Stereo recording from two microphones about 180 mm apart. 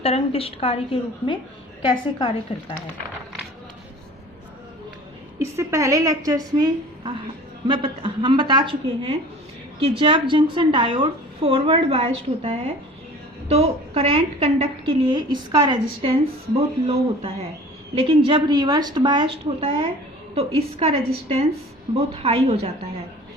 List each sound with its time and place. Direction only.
0.0 s a woman's voice: 35° left (ahead or behind)
5.4 s a woman's voice: 15° right (ahead or behind); by 22.7 s 35° right (ahead or behind)